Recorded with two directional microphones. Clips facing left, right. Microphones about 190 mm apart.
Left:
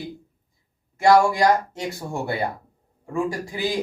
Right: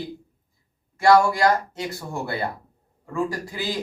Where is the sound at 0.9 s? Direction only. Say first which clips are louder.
Left 1 dB; 15° left (ahead or behind).